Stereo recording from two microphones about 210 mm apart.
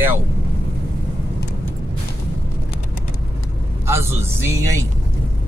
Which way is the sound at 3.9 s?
10° right (ahead or behind).